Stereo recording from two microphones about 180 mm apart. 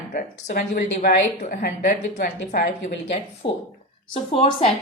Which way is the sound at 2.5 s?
40° left (ahead or behind).